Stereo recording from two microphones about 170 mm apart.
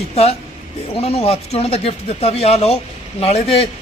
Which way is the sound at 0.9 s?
35° left (ahead or behind).